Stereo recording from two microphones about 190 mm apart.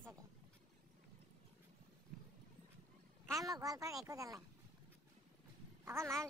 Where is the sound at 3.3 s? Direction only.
20° right (ahead or behind).